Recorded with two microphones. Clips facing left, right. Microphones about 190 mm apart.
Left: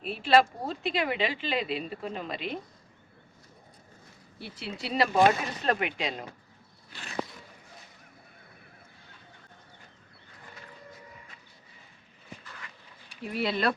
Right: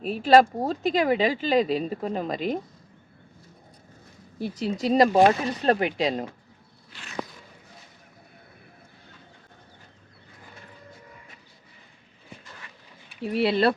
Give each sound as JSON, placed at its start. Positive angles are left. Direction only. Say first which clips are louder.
{"t": 0.0, "sound": "speech", "louder": "right 6 dB", "side_deg": -40}
{"t": 4.4, "sound": "speech", "louder": "right 11 dB", "side_deg": -40}
{"t": 13.2, "sound": "speech", "louder": "right 7 dB", "side_deg": -30}